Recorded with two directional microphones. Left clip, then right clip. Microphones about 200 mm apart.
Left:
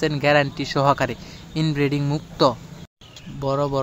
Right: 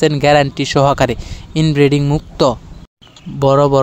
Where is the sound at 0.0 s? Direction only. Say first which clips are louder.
Right 7 dB; 35° right (ahead or behind).